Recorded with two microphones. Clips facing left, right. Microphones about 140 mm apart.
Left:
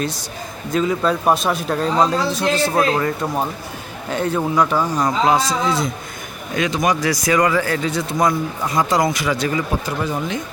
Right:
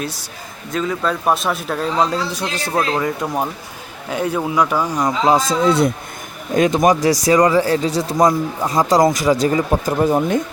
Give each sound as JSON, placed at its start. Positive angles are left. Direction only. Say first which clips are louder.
{"t": 0.7, "sound": "speech", "louder": "left 2 dB", "side_deg": 0}
{"t": 5.4, "sound": "a man's voice", "louder": "right 4 dB", "side_deg": -55}
{"t": 6.5, "sound": "speech", "louder": "right 5 dB", "side_deg": -45}